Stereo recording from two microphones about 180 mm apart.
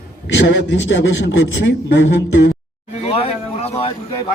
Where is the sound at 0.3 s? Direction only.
80° left.